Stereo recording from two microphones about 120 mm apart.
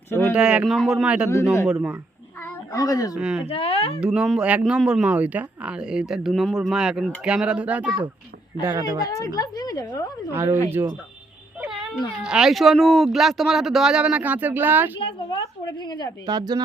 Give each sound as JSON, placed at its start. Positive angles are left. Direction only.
{"t": 0.1, "sound": "a sound", "side_deg": 20}
{"t": 0.3, "sound": "speech", "side_deg": -5}
{"t": 2.4, "sound": "a sound", "side_deg": 30}
{"t": 3.2, "sound": "speech", "side_deg": -5}
{"t": 3.4, "sound": "speech", "side_deg": 55}
{"t": 4.0, "sound": "speech", "side_deg": -5}
{"t": 8.6, "sound": "speech", "side_deg": -25}
{"t": 9.0, "sound": "a woman's voice", "side_deg": 30}
{"t": 10.3, "sound": "speech", "side_deg": -20}
{"t": 11.6, "sound": "a sound", "side_deg": -5}
{"t": 12.2, "sound": "speech", "side_deg": -5}
{"t": 14.9, "sound": "a woman's voice", "side_deg": 45}
{"t": 16.2, "sound": "speech", "side_deg": -35}